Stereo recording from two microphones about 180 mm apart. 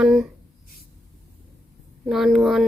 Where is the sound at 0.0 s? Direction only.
5° right (ahead or behind).